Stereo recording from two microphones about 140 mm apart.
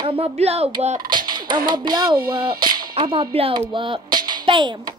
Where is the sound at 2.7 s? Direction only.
90° right.